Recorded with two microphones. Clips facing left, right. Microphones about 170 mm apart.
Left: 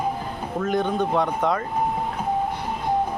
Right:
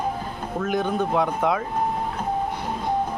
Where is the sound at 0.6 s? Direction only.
5° right (ahead or behind).